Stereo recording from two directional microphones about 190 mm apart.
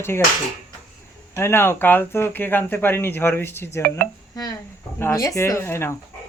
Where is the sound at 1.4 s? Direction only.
10° left (ahead or behind).